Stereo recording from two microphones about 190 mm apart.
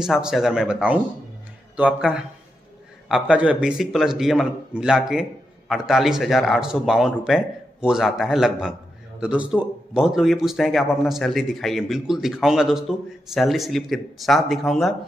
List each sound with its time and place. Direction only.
0.0 s speech: 5° right (ahead or behind)